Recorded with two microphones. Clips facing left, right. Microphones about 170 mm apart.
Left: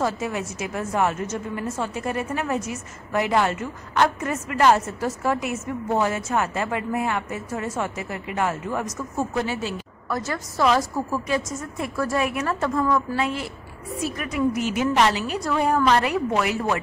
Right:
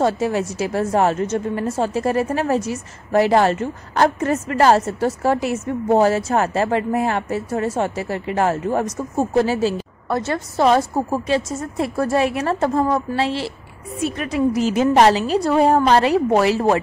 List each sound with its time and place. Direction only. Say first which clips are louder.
0.0 s a woman's voice: right 7 dB; 30° right (ahead or behind)